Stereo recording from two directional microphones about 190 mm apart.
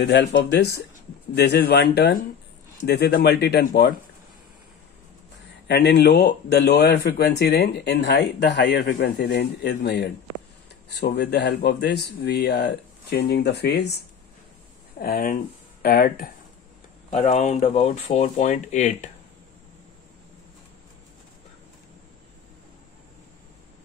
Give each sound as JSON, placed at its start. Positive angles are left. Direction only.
{"t": 0.0, "sound": "speech", "side_deg": 65}
{"t": 5.7, "sound": "speech", "side_deg": 65}
{"t": 15.0, "sound": "speech", "side_deg": 50}
{"t": 17.1, "sound": "speech", "side_deg": 40}